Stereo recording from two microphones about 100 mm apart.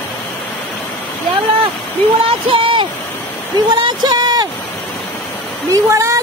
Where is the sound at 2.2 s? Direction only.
65° right (ahead or behind).